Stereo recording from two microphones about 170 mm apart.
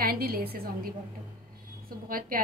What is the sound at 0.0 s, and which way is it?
A woman's voice, 60° right (ahead or behind).